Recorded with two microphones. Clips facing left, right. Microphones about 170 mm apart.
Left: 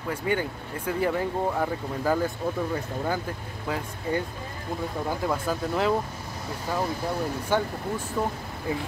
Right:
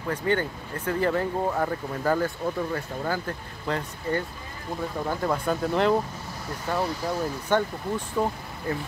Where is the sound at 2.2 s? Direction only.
20° left (ahead or behind).